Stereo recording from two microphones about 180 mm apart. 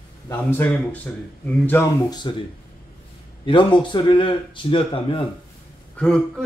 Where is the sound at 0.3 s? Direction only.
10° left (ahead or behind).